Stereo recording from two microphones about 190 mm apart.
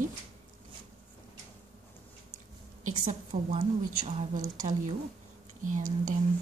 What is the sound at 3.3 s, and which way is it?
Speech, 40° right (ahead or behind).